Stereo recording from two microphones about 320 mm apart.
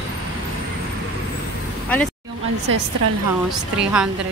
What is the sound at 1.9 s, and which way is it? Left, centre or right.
Speech, centre.